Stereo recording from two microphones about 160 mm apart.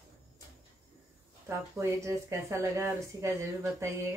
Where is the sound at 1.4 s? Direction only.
15° right (ahead or behind).